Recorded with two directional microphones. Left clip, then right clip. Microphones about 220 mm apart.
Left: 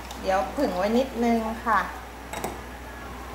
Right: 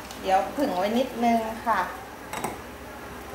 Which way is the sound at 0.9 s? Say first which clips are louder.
Even; 30° left (ahead or behind).